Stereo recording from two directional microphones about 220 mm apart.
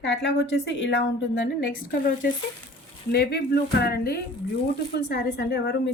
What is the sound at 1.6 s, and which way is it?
A woman's voice, 40° left (ahead or behind).